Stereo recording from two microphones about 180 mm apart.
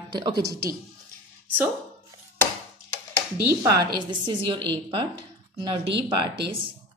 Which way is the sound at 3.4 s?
15° right (ahead or behind).